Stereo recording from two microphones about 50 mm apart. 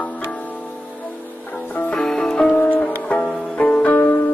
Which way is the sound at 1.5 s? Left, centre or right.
Left.